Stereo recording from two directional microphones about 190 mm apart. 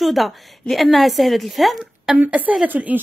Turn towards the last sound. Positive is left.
turn(degrees=-10)  # may be behind; listen again after turning